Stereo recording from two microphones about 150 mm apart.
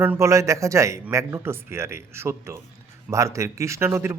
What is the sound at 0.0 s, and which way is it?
Speech, 15° right (ahead or behind).